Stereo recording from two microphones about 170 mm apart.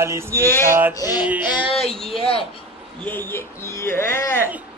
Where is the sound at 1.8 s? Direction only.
Centre (ahead or behind).